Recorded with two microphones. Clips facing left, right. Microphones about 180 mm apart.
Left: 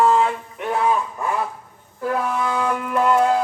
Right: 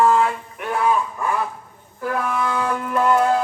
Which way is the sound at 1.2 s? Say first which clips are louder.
Right 1 dB; 20° left (ahead or behind).